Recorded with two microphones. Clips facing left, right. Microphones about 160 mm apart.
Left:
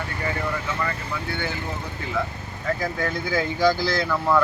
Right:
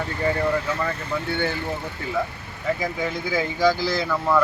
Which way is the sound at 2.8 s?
5° right (ahead or behind).